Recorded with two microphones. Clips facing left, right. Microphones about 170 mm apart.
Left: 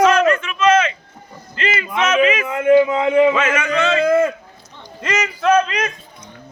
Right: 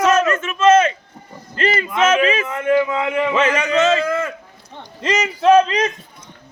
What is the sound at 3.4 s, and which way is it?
Speech, 35° right (ahead or behind).